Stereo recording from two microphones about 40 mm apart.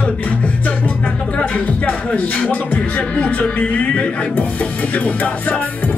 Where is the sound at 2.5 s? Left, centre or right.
Left.